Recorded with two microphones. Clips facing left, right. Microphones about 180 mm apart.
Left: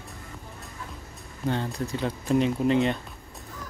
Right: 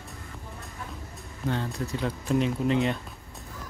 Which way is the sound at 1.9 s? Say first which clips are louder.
Left 2 dB; centre (ahead or behind).